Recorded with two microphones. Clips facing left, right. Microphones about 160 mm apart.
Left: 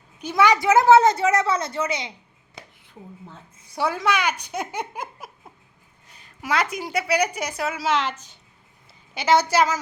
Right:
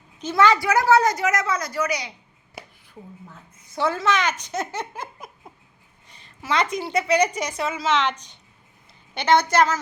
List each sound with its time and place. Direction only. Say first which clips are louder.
0.2 s a woman's voice: right 1 dB; 15° left (ahead or behind)
3.8 s a woman's voice: right 1 dB; 10° left (ahead or behind)